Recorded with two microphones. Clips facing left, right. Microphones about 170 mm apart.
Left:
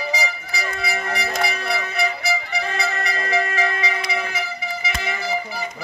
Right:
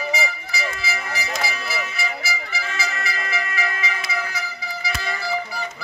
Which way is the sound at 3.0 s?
35° left (ahead or behind).